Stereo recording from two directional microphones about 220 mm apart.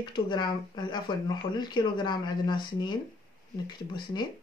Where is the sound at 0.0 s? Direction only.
20° left (ahead or behind).